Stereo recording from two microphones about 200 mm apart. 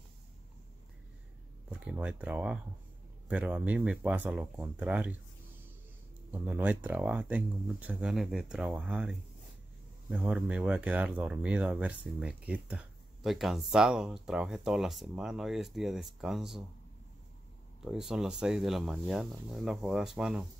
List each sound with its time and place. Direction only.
1.7 s speech: 5° right (ahead or behind)
6.3 s speech: 10° right (ahead or behind)
17.8 s speech: centre (ahead or behind)